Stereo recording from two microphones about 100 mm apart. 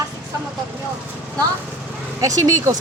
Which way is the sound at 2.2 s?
35° right (ahead or behind).